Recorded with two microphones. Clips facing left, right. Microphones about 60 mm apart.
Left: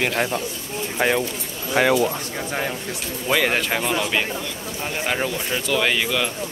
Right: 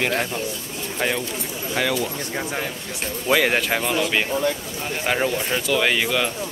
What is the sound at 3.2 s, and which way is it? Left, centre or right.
Speech, centre.